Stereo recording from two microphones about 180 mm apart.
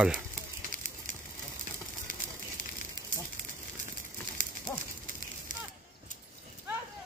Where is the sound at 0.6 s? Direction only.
45° right (ahead or behind).